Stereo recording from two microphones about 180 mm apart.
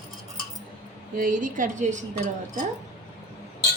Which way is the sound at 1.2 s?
50° right (ahead or behind).